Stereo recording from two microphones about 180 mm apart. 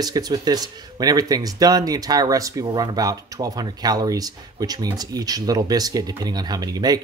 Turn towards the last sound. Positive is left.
turn(degrees=-20)  # may be behind; listen again after turning